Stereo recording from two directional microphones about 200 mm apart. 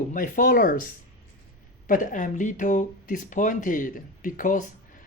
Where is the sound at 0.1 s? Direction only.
40° left (ahead or behind).